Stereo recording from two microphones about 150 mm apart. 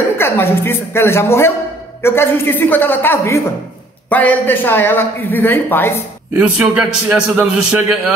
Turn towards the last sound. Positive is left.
turn(degrees=-10)  # may be behind; listen again after turning